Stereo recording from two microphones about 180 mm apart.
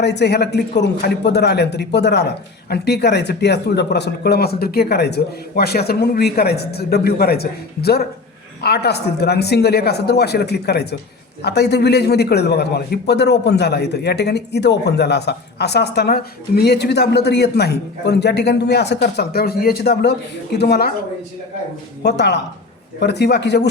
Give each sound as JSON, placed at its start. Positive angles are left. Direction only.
{"t": 0.0, "sound": "a man's voice", "side_deg": 70}
{"t": 22.0, "sound": "a man's voice", "side_deg": 70}